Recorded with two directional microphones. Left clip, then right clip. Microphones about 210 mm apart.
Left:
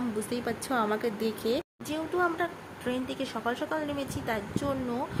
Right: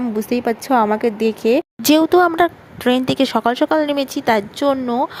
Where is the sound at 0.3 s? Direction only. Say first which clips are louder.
Right 14 dB; 35° right (ahead or behind).